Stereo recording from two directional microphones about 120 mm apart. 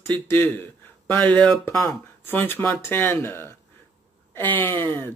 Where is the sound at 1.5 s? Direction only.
20° left (ahead or behind).